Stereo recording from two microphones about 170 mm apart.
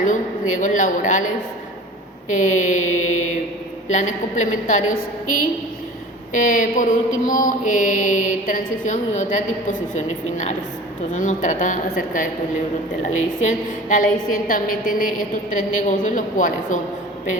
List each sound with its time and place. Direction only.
0.1 s a woman's voice: 50° left (ahead or behind)
2.3 s a woman's voice: 50° left (ahead or behind)
13.4 s a woman's voice: 50° left (ahead or behind)